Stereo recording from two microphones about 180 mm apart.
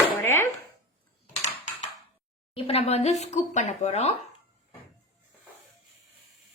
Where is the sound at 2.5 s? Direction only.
35° left (ahead or behind).